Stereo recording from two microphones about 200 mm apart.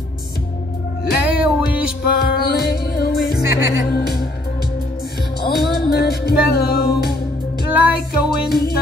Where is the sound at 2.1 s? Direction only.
50° left (ahead or behind).